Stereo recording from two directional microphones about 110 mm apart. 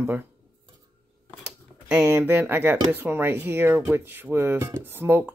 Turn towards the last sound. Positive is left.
turn(degrees=-20)  # may be behind; listen again after turning